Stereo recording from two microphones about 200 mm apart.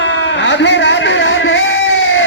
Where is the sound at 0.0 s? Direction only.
65° left (ahead or behind).